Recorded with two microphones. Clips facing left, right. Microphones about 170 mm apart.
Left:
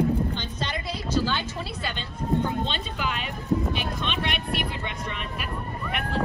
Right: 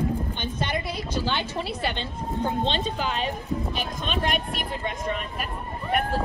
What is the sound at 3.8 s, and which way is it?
Vehicle, 40° right (ahead or behind).